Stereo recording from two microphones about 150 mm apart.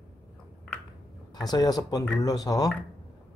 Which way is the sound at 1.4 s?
25° left (ahead or behind).